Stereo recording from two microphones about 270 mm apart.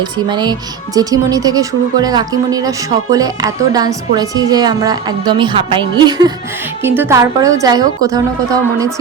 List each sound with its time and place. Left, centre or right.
0.0 s a woman's voice: centre